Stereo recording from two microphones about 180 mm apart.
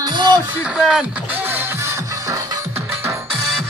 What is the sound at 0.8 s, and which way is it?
Speech, 5° left (ahead or behind).